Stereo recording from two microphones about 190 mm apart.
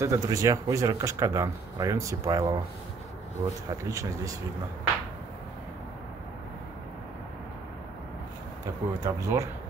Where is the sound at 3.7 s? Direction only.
15° right (ahead or behind).